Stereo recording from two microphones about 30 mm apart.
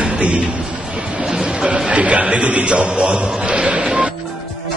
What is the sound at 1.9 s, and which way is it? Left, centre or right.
A man's voice, right.